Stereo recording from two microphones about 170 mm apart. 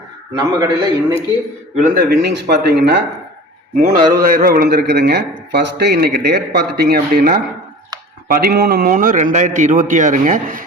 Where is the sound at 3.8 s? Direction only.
55° right (ahead or behind).